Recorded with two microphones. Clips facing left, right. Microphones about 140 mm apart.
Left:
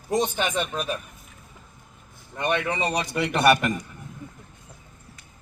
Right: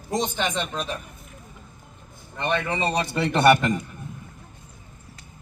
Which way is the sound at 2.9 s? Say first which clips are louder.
Right 2 dB; 30° right (ahead or behind).